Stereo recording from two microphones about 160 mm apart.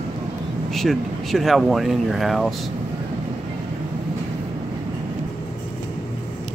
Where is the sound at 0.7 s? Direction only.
Centre (ahead or behind).